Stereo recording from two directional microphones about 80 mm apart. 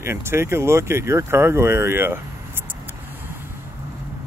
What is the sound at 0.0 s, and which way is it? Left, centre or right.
Speech, right.